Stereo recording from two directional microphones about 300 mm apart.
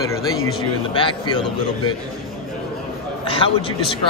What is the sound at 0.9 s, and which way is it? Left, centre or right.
Speech, centre.